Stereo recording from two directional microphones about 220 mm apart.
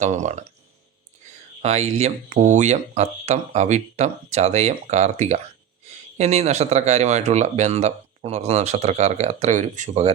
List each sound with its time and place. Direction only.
0.0 s speech: 30° right (ahead or behind)
1.6 s speech: 30° right (ahead or behind)